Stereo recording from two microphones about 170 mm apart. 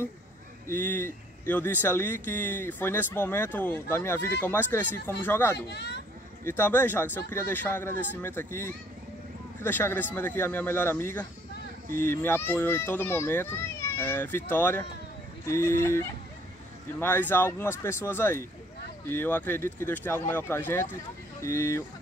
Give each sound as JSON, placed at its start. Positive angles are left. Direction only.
{"t": 0.7, "sound": "speech", "side_deg": 10}
{"t": 5.7, "sound": "speech", "side_deg": 75}
{"t": 6.4, "sound": "speech", "side_deg": 15}